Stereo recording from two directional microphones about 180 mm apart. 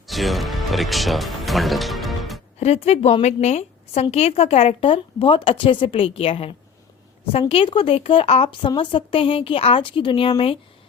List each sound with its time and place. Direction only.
0.1 s speech: centre (ahead or behind)
2.6 s a woman's voice: 35° left (ahead or behind)